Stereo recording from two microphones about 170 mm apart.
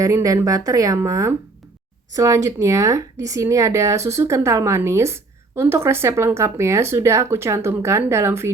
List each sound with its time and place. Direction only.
0.0 s speech: 20° right (ahead or behind)